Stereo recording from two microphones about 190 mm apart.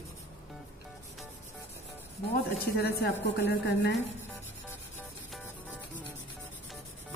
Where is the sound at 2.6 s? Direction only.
55° left (ahead or behind).